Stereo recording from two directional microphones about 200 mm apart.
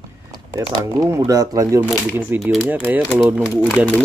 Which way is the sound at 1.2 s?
20° right (ahead or behind).